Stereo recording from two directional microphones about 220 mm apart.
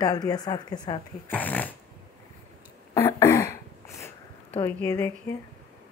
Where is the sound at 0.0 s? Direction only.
20° left (ahead or behind).